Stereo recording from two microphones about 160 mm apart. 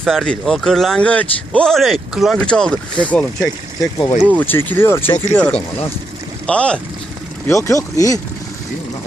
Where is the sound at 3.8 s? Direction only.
20° left (ahead or behind); by 6.8 s 5° left (ahead or behind).